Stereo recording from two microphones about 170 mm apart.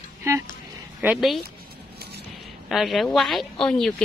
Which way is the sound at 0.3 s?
15° right (ahead or behind).